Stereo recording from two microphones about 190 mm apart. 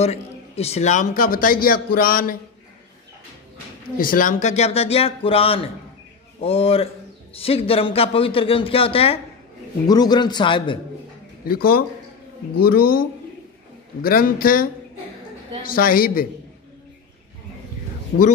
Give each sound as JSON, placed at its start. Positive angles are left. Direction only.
{"t": 0.0, "sound": "a man's voice", "side_deg": 35}
{"t": 4.0, "sound": "speech", "side_deg": 45}
{"t": 11.4, "sound": "a man's voice", "side_deg": 50}
{"t": 14.0, "sound": "a man's voice", "side_deg": 50}